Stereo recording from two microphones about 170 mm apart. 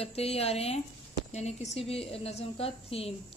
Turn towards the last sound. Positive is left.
turn(degrees=35)  # may be behind; listen again after turning